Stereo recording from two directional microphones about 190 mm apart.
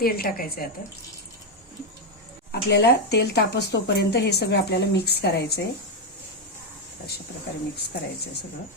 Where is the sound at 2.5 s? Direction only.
60° left (ahead or behind).